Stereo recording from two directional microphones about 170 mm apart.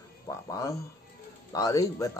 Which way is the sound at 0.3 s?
20° left (ahead or behind).